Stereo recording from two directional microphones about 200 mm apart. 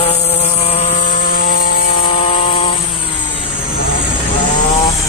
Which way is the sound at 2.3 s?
30° left (ahead or behind).